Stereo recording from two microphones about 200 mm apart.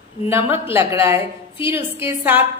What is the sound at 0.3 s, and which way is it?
A woman's voice, 10° right (ahead or behind).